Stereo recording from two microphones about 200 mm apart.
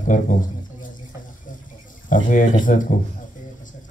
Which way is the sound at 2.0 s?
40° left (ahead or behind).